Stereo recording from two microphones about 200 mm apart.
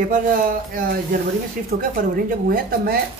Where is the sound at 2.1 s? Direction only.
45° right (ahead or behind).